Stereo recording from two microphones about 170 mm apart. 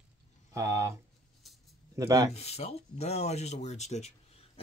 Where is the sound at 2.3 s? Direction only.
40° left (ahead or behind).